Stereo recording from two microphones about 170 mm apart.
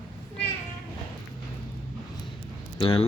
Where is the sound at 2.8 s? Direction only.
30° left (ahead or behind).